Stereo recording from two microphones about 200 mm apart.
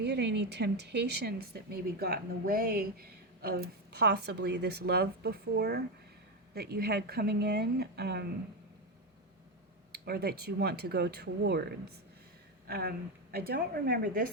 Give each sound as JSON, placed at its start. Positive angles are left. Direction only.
{"t": 0.0, "sound": "speech", "side_deg": -60}
{"t": 9.9, "sound": "speech", "side_deg": -50}
{"t": 12.6, "sound": "speech", "side_deg": -50}